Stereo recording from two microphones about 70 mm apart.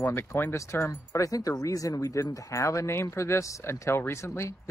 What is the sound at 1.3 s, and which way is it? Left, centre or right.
Speech, left.